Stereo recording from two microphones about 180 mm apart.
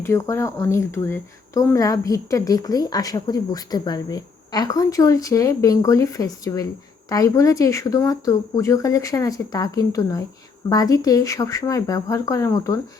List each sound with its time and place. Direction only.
0.0 s speech: 15° left (ahead or behind)